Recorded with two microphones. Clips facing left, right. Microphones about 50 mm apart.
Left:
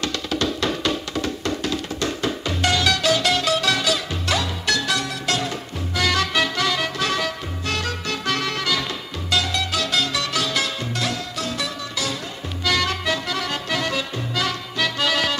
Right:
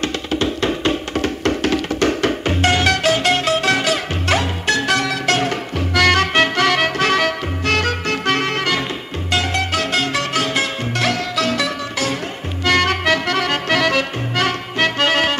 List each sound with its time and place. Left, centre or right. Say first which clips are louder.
0.0 s music: right 4 dB; right
1.2 s music: right 6 dB; right
2.5 s music: right 3 dB; right
11.0 s music: right 10 dB; right
12.6 s music: right 6 dB; right